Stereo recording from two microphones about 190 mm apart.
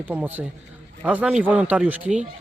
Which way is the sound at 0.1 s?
10° right (ahead or behind).